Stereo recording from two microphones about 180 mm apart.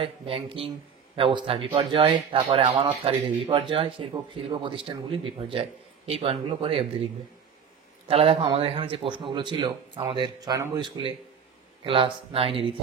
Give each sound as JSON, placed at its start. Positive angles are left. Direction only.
{"t": 0.0, "sound": "speech", "side_deg": -30}
{"t": 8.1, "sound": "speech", "side_deg": -35}